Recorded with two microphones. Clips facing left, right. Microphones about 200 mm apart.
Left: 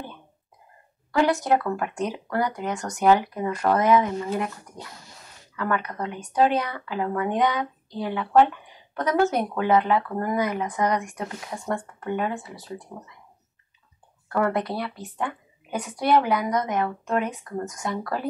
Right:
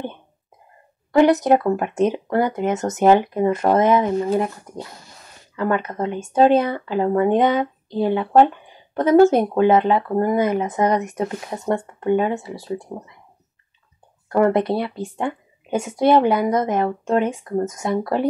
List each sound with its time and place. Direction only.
1.1 s speech: 20° right (ahead or behind)
14.3 s speech: 25° right (ahead or behind)